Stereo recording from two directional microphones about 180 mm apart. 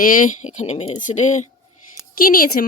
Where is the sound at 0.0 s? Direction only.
50° left (ahead or behind).